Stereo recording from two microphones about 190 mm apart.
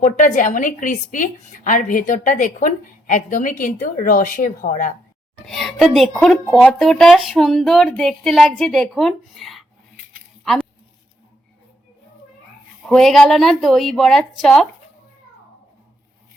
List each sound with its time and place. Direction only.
0.0 s a woman's voice: 40° left (ahead or behind)
5.4 s a woman's voice: centre (ahead or behind)
12.8 s a woman's voice: centre (ahead or behind)